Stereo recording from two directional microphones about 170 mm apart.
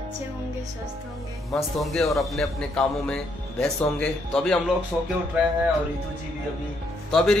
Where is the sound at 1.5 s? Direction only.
Centre (ahead or behind).